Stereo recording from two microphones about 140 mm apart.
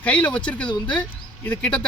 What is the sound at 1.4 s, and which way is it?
Speech, 10° left (ahead or behind).